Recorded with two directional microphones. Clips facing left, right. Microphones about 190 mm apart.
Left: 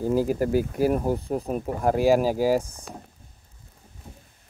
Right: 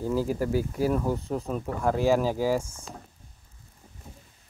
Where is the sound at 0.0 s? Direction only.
15° left (ahead or behind).